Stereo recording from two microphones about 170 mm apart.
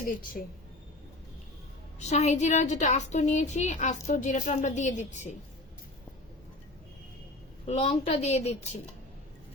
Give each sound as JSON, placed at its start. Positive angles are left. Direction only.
{"t": 0.4, "sound": "a woman's voice", "side_deg": 50}
{"t": 2.0, "sound": "a woman's voice", "side_deg": 40}
{"t": 7.7, "sound": "a woman's voice", "side_deg": 40}